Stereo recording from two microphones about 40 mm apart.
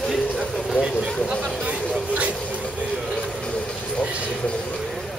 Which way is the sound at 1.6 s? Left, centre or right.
Right.